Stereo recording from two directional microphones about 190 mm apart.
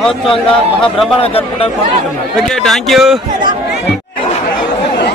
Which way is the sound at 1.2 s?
30° left (ahead or behind).